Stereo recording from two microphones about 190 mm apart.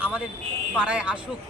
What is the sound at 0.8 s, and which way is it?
Speech, 5° right (ahead or behind).